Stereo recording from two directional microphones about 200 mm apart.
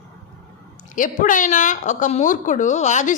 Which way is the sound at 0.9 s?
40° left (ahead or behind).